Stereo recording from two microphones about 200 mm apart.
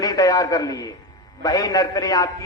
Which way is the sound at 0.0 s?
20° left (ahead or behind).